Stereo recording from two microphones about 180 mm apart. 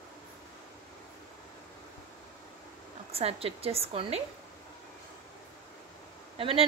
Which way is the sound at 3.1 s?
35° right (ahead or behind).